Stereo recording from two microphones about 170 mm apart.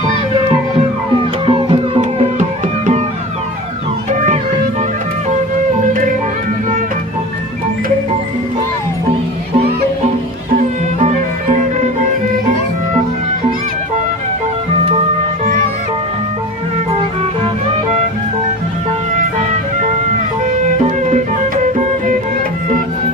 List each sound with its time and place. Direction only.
1.5 s music: 35° right (ahead or behind)
5.8 s music: 50° right (ahead or behind)
10.5 s music: 45° right (ahead or behind)
20.4 s music: 45° right (ahead or behind)